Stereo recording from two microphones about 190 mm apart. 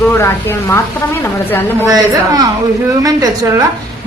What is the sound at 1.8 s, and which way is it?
A woman's voice, 20° right (ahead or behind).